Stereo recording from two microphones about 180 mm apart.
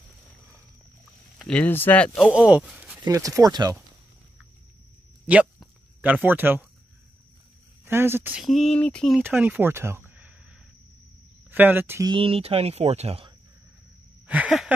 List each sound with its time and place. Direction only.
1.4 s speech: 10° left (ahead or behind)
2.1 s speech: 5° right (ahead or behind)
3.0 s speech: 20° right (ahead or behind)
5.2 s a sound: 5° right (ahead or behind)
7.8 s speech: 15° right (ahead or behind); by 9.2 s 5° left (ahead or behind)
9.3 s speech: 5° right (ahead or behind)
10.0 s a sound: 10° right (ahead or behind)
11.5 s speech: 10° right (ahead or behind)
12.1 s speech: 30° right (ahead or behind)
14.2 s a sound: 5° right (ahead or behind)